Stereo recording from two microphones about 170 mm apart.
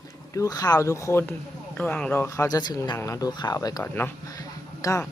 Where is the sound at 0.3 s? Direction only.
20° left (ahead or behind).